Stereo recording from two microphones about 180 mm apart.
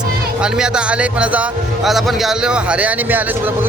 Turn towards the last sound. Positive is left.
turn(degrees=-10)  # may be behind; listen again after turning